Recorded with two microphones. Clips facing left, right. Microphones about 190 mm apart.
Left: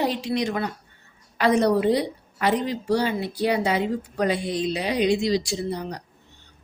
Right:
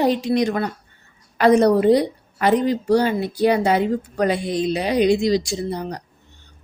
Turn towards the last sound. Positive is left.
turn(degrees=-45)  # may be behind; listen again after turning